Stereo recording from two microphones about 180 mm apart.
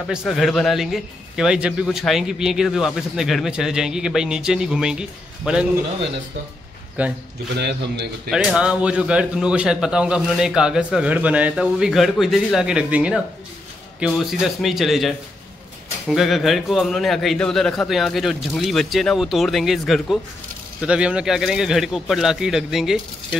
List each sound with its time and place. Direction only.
0.1 s a man's voice: centre (ahead or behind)
7.0 s a man's voice: 10° right (ahead or behind)
7.6 s a man's voice: 70° right (ahead or behind)
8.3 s a man's voice: centre (ahead or behind)